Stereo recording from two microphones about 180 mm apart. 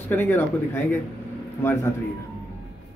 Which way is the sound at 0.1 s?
10° left (ahead or behind).